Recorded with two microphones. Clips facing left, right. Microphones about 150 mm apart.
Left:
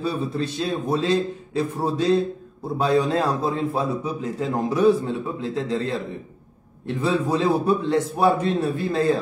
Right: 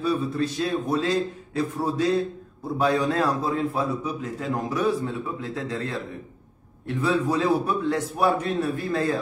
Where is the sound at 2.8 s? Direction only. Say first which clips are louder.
Left 2 dB; 25° left (ahead or behind).